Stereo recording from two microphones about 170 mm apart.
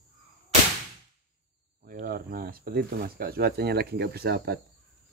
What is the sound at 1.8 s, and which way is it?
Speech, 60° right (ahead or behind).